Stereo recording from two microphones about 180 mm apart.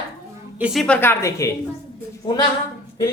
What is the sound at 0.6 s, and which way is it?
Speech, centre (ahead or behind).